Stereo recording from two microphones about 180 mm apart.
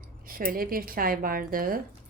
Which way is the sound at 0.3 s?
55° right (ahead or behind).